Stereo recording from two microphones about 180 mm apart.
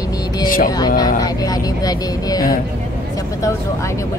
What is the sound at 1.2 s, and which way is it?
Speech, 20° left (ahead or behind).